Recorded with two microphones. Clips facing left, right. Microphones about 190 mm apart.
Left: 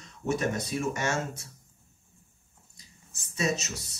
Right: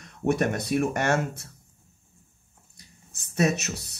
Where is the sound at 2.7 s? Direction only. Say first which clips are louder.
Right 3 dB; 60° right (ahead or behind).